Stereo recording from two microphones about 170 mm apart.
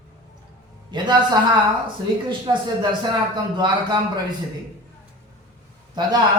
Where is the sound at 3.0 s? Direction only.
25° right (ahead or behind).